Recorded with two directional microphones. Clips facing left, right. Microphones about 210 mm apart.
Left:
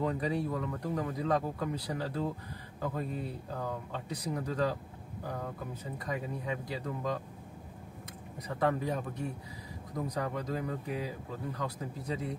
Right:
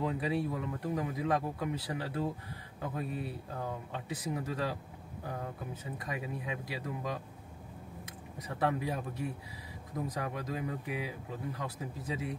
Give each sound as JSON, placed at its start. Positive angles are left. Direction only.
{"t": 0.0, "sound": "speech", "side_deg": -5}
{"t": 8.5, "sound": "speech", "side_deg": -10}